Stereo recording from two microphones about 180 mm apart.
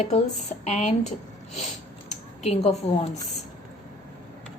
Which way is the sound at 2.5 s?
35° left (ahead or behind).